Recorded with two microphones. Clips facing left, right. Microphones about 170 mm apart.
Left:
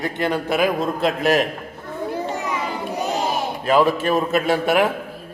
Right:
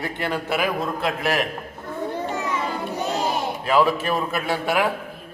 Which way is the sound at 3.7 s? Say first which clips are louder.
Left 3 dB; 20° left (ahead or behind).